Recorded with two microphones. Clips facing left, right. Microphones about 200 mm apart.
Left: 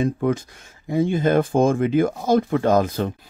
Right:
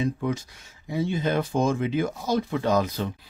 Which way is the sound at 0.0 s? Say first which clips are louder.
Left 5 dB; 50° left (ahead or behind).